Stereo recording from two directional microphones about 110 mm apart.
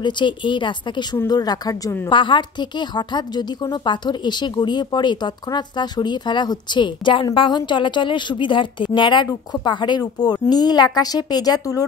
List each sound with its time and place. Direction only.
0.0 s a woman's voice: 45° left (ahead or behind)
2.0 s a woman's voice: 45° left (ahead or behind)